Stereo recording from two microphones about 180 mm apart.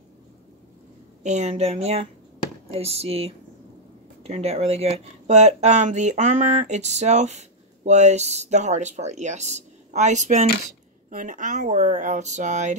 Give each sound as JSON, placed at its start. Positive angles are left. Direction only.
{"t": 1.2, "sound": "speech", "side_deg": -40}